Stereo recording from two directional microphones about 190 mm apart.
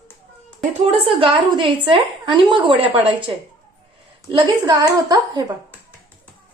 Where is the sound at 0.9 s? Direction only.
30° right (ahead or behind).